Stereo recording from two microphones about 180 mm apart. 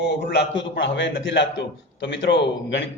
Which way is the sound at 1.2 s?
80° left.